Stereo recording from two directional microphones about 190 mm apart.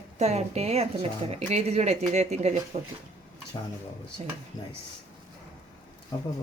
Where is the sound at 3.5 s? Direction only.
25° left (ahead or behind).